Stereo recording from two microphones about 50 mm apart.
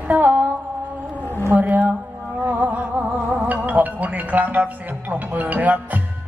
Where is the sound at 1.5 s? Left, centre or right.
Right.